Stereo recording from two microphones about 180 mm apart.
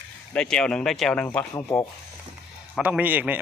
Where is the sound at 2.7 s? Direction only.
10° right (ahead or behind).